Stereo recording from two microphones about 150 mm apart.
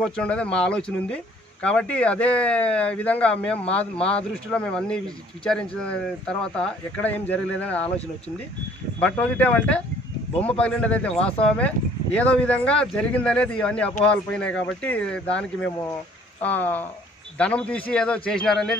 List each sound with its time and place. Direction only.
0.0 s speech: 5° left (ahead or behind)
9.0 s speech: 10° left (ahead or behind)
10.3 s speech: 40° left (ahead or behind)
10.6 s speech: 10° left (ahead or behind)